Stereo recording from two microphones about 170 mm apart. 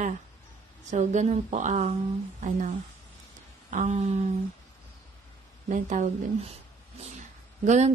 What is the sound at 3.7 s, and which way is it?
Speech, 45° right (ahead or behind).